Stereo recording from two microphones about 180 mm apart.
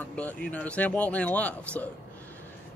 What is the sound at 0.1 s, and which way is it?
A man's voice, 5° left (ahead or behind).